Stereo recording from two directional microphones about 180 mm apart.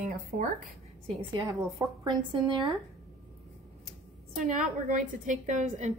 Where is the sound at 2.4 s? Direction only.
25° right (ahead or behind).